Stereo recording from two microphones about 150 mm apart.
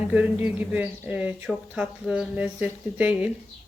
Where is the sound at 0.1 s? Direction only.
10° right (ahead or behind).